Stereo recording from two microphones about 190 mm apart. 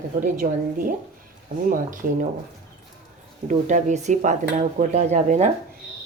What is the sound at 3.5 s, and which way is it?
Speech, 40° right (ahead or behind).